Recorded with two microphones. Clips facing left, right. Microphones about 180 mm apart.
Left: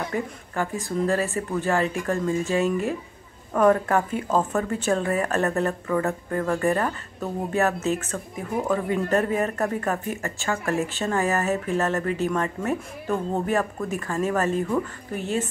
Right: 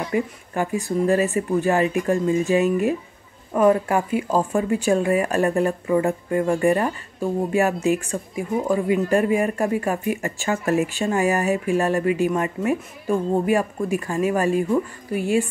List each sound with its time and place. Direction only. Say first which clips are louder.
0.1 s speech: right 5 dB; 15° right (ahead or behind)